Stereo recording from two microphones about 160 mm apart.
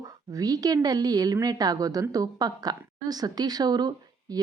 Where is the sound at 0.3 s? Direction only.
25° right (ahead or behind).